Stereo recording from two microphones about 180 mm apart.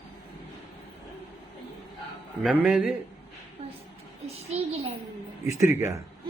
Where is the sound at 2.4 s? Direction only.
5° right (ahead or behind).